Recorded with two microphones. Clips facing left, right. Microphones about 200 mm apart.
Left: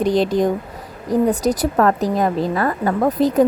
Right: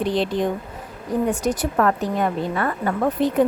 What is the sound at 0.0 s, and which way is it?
Speech, 40° left (ahead or behind).